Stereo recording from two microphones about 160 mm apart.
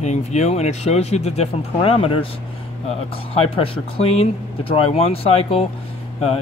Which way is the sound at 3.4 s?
35° left (ahead or behind).